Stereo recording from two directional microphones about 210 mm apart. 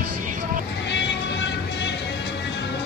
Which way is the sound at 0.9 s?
55° left (ahead or behind).